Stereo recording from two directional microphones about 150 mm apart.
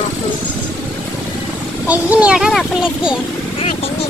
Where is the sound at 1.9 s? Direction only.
10° right (ahead or behind).